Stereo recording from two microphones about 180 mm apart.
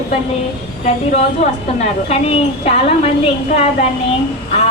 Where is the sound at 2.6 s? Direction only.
35° left (ahead or behind).